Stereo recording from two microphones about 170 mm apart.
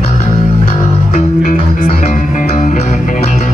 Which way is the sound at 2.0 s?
45° left (ahead or behind).